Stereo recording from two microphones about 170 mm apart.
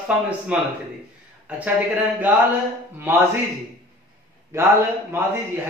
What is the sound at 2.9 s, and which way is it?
Speech, 15° right (ahead or behind).